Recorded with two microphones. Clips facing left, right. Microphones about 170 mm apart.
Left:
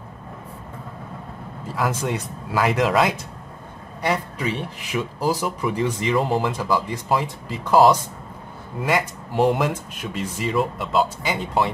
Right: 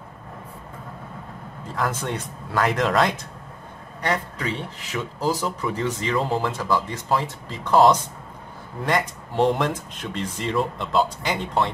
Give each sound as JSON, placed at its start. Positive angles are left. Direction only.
{"t": 1.8, "sound": "speech", "side_deg": 10}